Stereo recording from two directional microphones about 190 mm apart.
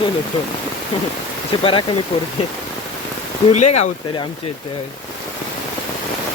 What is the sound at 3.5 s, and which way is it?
Speech, 35° left (ahead or behind).